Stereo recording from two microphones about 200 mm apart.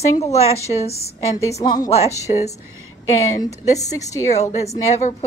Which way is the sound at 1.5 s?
20° left (ahead or behind).